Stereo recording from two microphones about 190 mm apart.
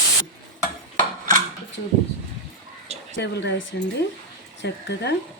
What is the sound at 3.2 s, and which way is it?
Speech, 65° left (ahead or behind).